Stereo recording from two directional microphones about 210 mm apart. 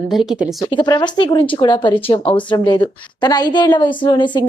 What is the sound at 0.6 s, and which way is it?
A woman's voice, 20° left (ahead or behind).